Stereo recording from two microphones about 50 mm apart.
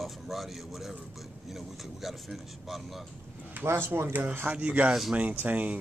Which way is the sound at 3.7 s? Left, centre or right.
Right.